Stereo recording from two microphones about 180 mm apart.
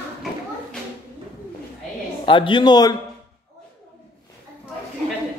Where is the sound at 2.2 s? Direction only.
25° left (ahead or behind).